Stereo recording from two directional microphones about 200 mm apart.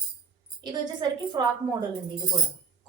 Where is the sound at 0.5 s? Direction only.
20° right (ahead or behind).